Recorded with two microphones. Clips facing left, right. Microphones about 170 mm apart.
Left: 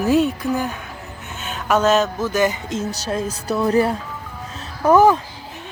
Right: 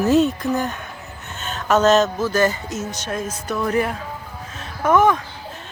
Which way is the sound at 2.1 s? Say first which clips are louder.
Even; 15° left (ahead or behind).